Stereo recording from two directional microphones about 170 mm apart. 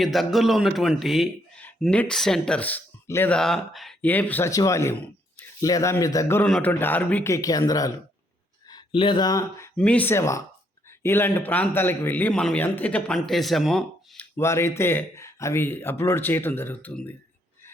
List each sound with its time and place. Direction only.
0.0 s a man's voice: centre (ahead or behind); by 6.4 s 15° left (ahead or behind)
6.4 s speech: 5° left (ahead or behind)
14.3 s speech: 15° left (ahead or behind)